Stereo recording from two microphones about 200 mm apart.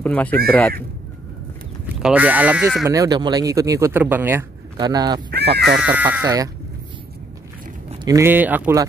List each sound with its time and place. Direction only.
0.0 s speech: 5° left (ahead or behind)
2.0 s speech: 5° right (ahead or behind)
2.8 s speech: 15° right (ahead or behind)
4.7 s speech: 20° right (ahead or behind)
5.3 s speech: 55° right (ahead or behind)
5.8 s speech: 10° right (ahead or behind)
8.0 s speech: 15° right (ahead or behind)